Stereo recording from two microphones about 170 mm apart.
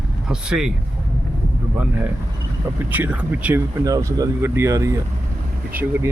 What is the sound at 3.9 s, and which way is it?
Speech, 20° right (ahead or behind).